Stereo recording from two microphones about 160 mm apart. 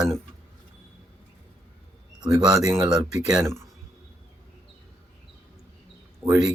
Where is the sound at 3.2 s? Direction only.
10° right (ahead or behind).